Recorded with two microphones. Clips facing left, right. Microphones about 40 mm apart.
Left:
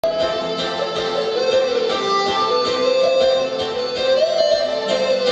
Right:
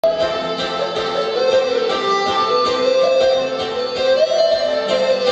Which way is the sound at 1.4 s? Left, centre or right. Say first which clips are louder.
Right 2 dB; centre.